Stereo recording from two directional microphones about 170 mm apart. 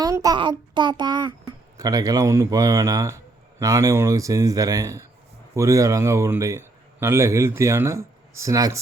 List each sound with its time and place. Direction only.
0.0 s a man's voice: 20° right (ahead or behind)